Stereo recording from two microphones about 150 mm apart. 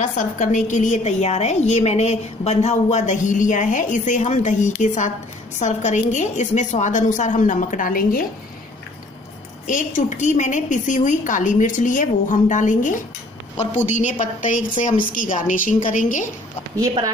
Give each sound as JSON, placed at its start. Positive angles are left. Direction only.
{"t": 0.0, "sound": "a woman's voice", "side_deg": 55}
{"t": 9.7, "sound": "a woman's voice", "side_deg": 55}